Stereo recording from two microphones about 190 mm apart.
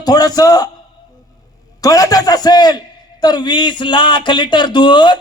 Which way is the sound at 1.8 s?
20° left (ahead or behind).